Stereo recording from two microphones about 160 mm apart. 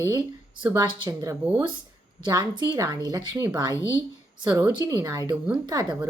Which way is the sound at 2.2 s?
25° right (ahead or behind).